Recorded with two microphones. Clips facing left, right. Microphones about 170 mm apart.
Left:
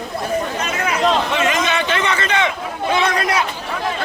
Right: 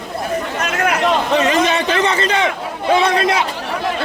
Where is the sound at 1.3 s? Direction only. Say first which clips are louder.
Right 4 dB; 35° right (ahead or behind).